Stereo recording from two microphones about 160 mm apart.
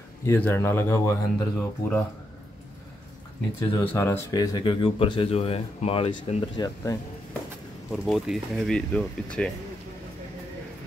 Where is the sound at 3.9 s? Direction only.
15° left (ahead or behind); by 6.1 s 40° left (ahead or behind).